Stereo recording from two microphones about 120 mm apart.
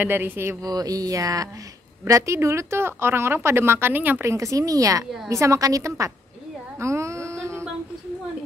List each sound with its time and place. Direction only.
0.0 s speech: 20° right (ahead or behind)
0.7 s speech: 30° right (ahead or behind)
6.8 s a sound: 25° right (ahead or behind)